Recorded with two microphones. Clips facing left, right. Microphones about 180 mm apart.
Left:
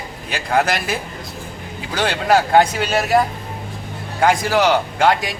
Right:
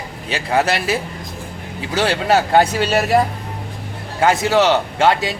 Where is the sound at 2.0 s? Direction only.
25° right (ahead or behind).